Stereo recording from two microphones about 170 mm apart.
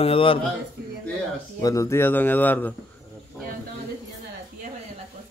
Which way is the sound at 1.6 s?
20° left (ahead or behind).